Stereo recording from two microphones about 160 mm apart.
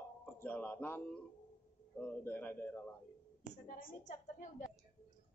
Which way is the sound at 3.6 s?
60° left (ahead or behind).